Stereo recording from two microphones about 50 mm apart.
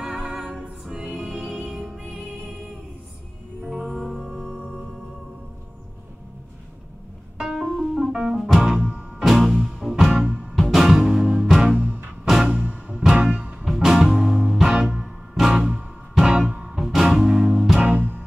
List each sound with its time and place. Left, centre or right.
0.0 s music: centre
4.0 s music: centre
7.3 s music: centre
12.4 s music: right
12.9 s music: centre
13.7 s music: centre
17.7 s music: right